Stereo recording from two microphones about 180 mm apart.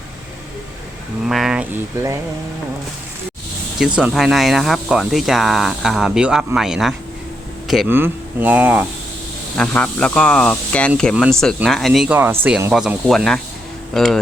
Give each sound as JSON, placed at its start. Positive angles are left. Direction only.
{"t": 1.3, "sound": "speech", "side_deg": 0}
{"t": 3.8, "sound": "speech", "side_deg": -5}
{"t": 9.6, "sound": "speech", "side_deg": 5}
{"t": 11.1, "sound": "speech", "side_deg": -5}